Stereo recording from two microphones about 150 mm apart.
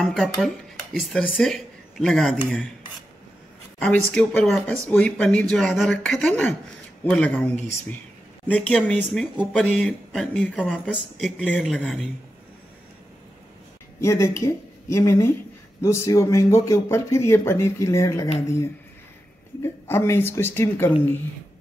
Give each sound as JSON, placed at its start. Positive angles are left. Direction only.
{"t": 0.0, "sound": "speech", "side_deg": 0}
{"t": 3.8, "sound": "speech", "side_deg": 5}
{"t": 14.0, "sound": "speech", "side_deg": 20}
{"t": 19.6, "sound": "speech", "side_deg": 15}